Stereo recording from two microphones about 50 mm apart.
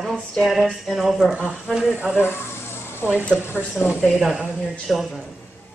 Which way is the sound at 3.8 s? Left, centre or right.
Centre.